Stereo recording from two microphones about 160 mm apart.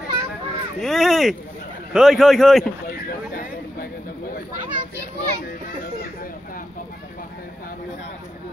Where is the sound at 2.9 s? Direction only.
65° left (ahead or behind).